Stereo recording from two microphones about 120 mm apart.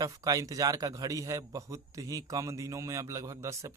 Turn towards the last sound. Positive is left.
turn(degrees=-25)  # may be behind; listen again after turning